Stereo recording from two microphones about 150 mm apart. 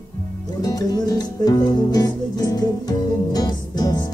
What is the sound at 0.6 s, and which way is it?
Music, 25° left (ahead or behind).